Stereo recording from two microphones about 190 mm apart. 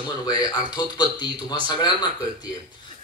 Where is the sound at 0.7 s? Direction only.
20° left (ahead or behind).